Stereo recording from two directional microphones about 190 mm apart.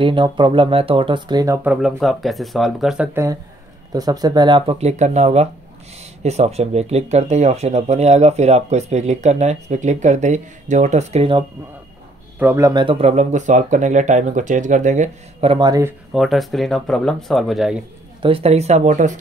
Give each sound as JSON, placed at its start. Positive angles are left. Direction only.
{"t": 0.0, "sound": "speech", "side_deg": -25}
{"t": 1.6, "sound": "speech", "side_deg": -5}
{"t": 3.9, "sound": "speech", "side_deg": -20}
{"t": 12.4, "sound": "speech", "side_deg": -15}
{"t": 12.8, "sound": "speech", "side_deg": -30}
{"t": 16.1, "sound": "speech", "side_deg": 0}
{"t": 18.2, "sound": "speech", "side_deg": -30}